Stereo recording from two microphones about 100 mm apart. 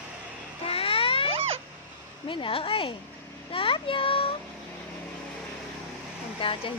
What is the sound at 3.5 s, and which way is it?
Child singing, 65° left (ahead or behind).